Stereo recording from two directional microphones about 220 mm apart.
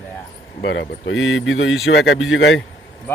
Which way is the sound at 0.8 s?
60° left (ahead or behind).